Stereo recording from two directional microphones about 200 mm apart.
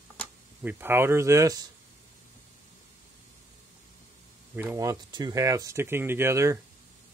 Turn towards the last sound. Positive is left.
turn(degrees=-15)  # may be behind; listen again after turning